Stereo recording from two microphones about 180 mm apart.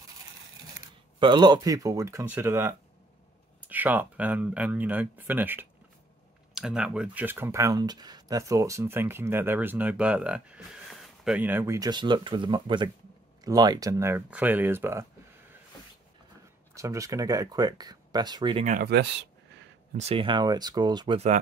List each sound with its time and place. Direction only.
1.2 s speech: 25° right (ahead or behind)
16.7 s speech: 15° right (ahead or behind)
18.6 s speech: 40° right (ahead or behind)
18.9 s speech: 70° right (ahead or behind)
20.0 s speech: 30° right (ahead or behind)